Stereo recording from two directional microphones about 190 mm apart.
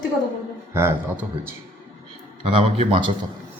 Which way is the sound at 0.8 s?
15° right (ahead or behind).